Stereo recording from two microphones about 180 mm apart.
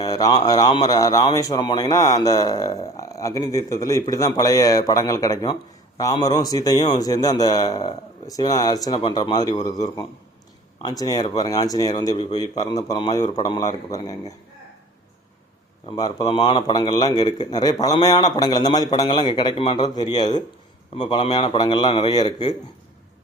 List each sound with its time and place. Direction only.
0.0 s speech: 20° left (ahead or behind)
15.9 s speech: 20° left (ahead or behind)